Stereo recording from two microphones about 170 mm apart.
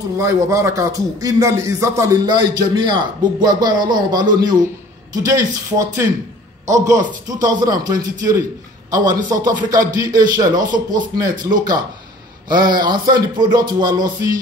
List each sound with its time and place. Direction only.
0.2 s a man's voice: 20° right (ahead or behind)